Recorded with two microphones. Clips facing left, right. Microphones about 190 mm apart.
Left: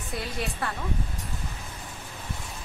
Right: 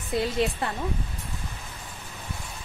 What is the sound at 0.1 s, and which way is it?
Speech, 25° right (ahead or behind).